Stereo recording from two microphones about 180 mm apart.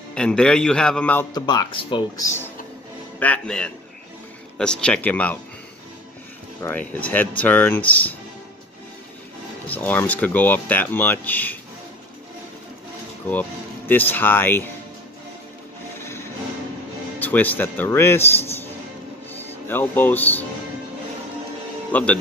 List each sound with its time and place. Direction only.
0.1 s a man's voice: 5° left (ahead or behind)
1.3 s speech: 25° left (ahead or behind)
3.2 s a man's voice: 5° left (ahead or behind)
6.6 s speech: 10° left (ahead or behind)
9.7 s speech: 10° left (ahead or behind)
13.3 s speech: 10° left (ahead or behind)
16.0 s music: 15° left (ahead or behind)
17.2 s speech: 10° left (ahead or behind)
21.9 s speech: 10° left (ahead or behind)